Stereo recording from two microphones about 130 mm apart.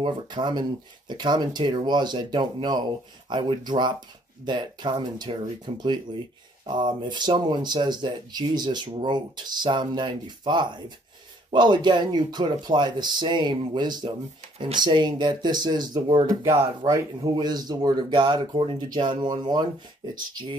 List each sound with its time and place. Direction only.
0.0 s speech: 35° right (ahead or behind)